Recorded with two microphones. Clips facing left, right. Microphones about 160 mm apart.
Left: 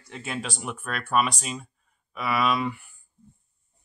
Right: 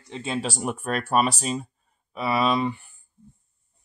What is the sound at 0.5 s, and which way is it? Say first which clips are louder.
Speech: right 6 dB; 40° right (ahead or behind).